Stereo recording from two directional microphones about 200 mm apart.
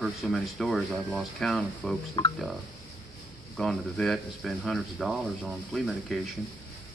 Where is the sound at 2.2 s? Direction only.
25° left (ahead or behind).